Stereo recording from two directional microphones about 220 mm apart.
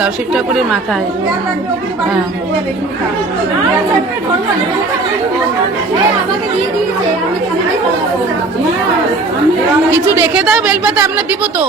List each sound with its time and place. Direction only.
0.0 s a woman's voice: centre (ahead or behind)
9.9 s speech: 10° right (ahead or behind)